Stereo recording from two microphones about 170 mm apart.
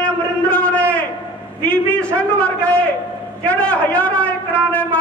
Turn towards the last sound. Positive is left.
turn(degrees=10)  # may be behind; listen again after turning